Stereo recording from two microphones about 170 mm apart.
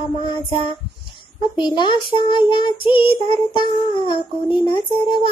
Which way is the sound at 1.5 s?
25° left (ahead or behind).